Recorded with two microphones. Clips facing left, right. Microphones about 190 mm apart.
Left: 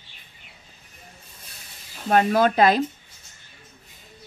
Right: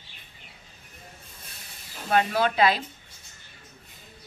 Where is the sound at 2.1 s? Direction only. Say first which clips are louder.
Left 5 dB; 45° left (ahead or behind).